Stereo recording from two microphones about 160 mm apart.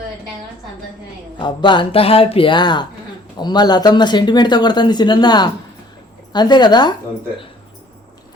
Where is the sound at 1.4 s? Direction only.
30° left (ahead or behind).